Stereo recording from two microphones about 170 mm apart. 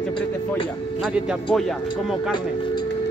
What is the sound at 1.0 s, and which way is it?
Speech, 5° right (ahead or behind).